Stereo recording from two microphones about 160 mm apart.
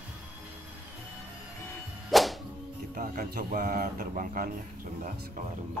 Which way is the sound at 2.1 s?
Centre (ahead or behind).